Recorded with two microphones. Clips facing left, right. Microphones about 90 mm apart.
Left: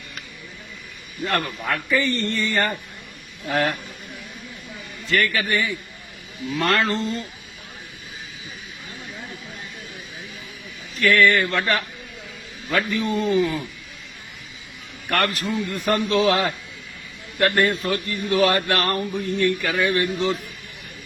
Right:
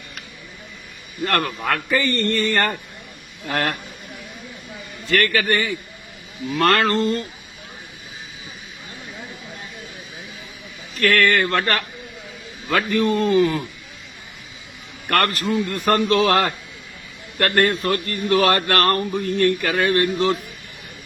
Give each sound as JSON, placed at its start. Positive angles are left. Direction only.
{"t": 1.2, "sound": "a man's voice", "side_deg": -65}
{"t": 5.1, "sound": "a man's voice", "side_deg": -65}
{"t": 11.1, "sound": "a man's voice", "side_deg": -60}
{"t": 15.1, "sound": "a man's voice", "side_deg": -60}